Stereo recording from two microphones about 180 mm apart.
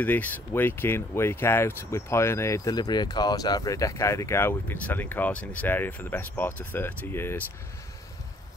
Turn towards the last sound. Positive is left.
turn(degrees=10)  # may be behind; listen again after turning